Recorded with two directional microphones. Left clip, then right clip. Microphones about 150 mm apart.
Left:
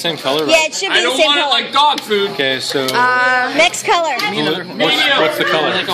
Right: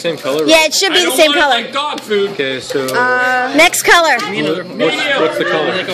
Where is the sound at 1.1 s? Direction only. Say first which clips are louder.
Right 3 dB; 45° right (ahead or behind).